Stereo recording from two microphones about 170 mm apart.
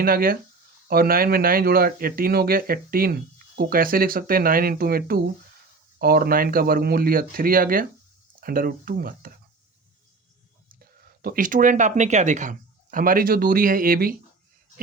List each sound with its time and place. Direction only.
0.0 s speech: 60° right (ahead or behind)
10.7 s speech: 65° right (ahead or behind)